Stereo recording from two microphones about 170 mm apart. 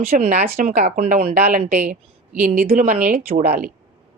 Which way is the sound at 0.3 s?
60° right (ahead or behind).